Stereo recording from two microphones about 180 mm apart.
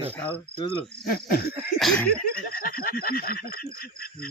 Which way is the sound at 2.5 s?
55° left (ahead or behind).